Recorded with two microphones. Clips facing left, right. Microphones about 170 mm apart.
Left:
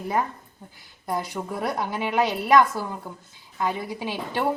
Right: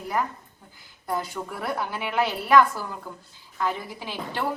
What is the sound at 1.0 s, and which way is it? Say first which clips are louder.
Speech: left 1 dB; 20° left (ahead or behind).